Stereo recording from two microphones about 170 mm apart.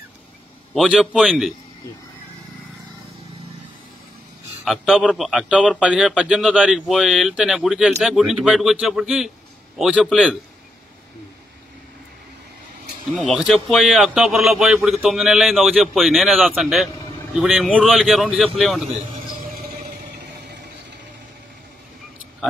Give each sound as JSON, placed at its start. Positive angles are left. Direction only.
{"t": 0.7, "sound": "a man's voice", "side_deg": -5}
{"t": 4.6, "sound": "a man's voice", "side_deg": 0}
{"t": 13.2, "sound": "a man's voice", "side_deg": 0}
{"t": 18.9, "sound": "vehicle", "side_deg": -55}